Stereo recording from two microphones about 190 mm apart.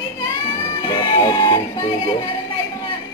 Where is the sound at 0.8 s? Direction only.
25° left (ahead or behind).